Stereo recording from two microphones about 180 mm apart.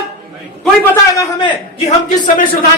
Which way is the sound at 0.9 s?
20° left (ahead or behind).